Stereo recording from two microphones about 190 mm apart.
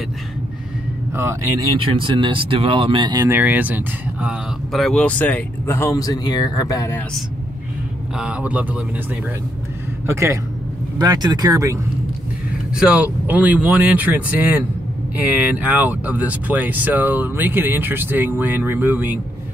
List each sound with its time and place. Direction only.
1.1 s speech: 10° right (ahead or behind)
2.0 s speech: 25° right (ahead or behind); by 7.0 s 15° left (ahead or behind)
8.2 s speech: 5° right (ahead or behind)
10.0 s speech: 15° right (ahead or behind)
12.7 s speech: 5° right (ahead or behind)